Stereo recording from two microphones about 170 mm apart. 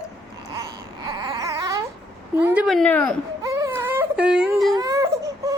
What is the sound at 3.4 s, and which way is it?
Baby cry, 20° right (ahead or behind).